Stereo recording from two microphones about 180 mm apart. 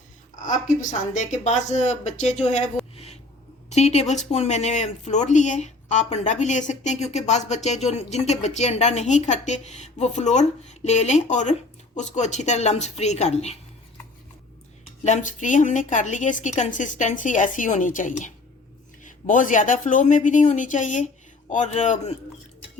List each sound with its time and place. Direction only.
0.4 s speech: 45° left (ahead or behind)
2.9 s a sound: 35° left (ahead or behind)
3.7 s speech: 35° left (ahead or behind)
15.0 s a woman's voice: 45° left (ahead or behind)